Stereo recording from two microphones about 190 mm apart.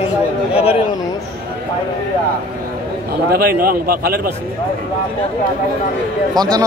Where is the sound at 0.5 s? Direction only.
30° left (ahead or behind).